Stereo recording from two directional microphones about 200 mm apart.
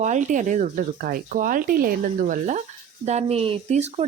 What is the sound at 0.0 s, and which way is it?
Speech, 35° right (ahead or behind).